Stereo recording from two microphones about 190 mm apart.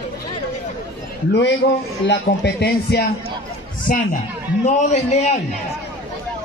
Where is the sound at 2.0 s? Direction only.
60° left (ahead or behind).